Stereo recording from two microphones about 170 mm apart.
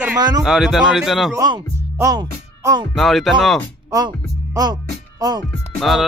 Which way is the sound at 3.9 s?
20° right (ahead or behind).